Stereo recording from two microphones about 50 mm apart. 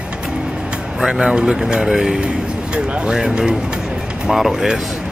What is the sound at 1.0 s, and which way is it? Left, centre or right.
Speech, centre.